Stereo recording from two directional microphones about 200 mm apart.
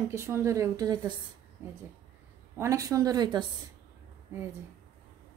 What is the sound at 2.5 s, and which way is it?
Speech, 15° right (ahead or behind).